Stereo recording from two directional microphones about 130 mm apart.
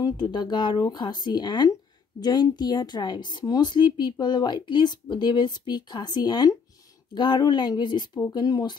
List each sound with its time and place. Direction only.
0.0 s speech: 35° left (ahead or behind)